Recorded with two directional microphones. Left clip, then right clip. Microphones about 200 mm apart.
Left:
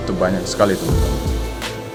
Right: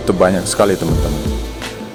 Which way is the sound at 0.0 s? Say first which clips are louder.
Right 6 dB; 45° right (ahead or behind).